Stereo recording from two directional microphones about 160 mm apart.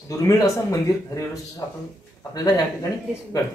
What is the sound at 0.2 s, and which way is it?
Speech, 20° left (ahead or behind).